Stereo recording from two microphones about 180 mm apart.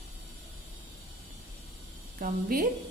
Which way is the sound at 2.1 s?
50° right (ahead or behind).